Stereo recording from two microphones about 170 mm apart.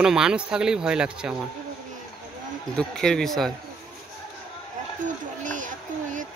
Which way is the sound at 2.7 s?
5° left (ahead or behind).